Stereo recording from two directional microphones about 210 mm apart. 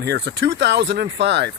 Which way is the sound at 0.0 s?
50° right (ahead or behind).